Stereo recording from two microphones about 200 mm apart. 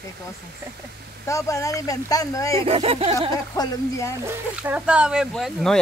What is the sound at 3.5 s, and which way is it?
Speech, 15° left (ahead or behind).